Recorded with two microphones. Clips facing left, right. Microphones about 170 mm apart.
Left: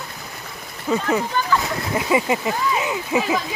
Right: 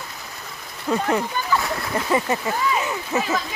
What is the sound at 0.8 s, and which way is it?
A woman's voice, 5° left (ahead or behind).